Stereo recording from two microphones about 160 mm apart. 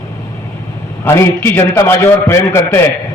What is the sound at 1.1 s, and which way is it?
A man's voice, 15° left (ahead or behind).